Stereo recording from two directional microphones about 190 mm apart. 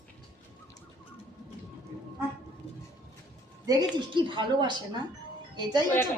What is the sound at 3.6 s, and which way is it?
A woman's voice, 25° right (ahead or behind).